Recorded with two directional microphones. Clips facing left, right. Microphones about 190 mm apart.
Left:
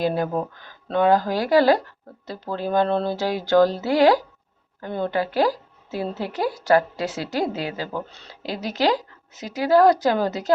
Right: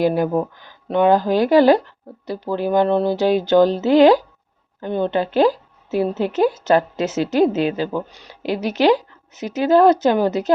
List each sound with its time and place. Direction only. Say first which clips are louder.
0.0 s a woman's voice: right 5 dB; 15° right (ahead or behind)